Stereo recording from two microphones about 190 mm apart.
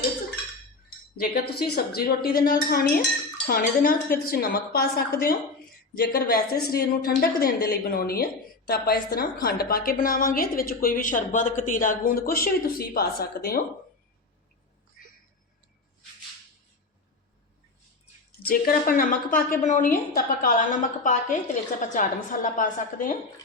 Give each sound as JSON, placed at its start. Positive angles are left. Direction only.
{"t": 1.1, "sound": "a woman's voice", "side_deg": 55}
{"t": 18.4, "sound": "a woman's voice", "side_deg": 50}